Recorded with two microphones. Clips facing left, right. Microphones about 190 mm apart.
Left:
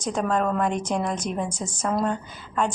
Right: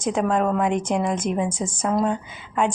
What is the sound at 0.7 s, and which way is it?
Speech, 55° right (ahead or behind).